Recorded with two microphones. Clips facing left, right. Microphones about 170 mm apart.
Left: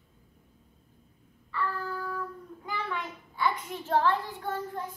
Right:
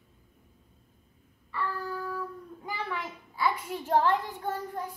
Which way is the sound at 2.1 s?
10° right (ahead or behind).